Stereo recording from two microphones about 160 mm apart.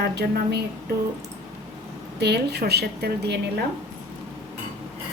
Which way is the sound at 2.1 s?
90° right.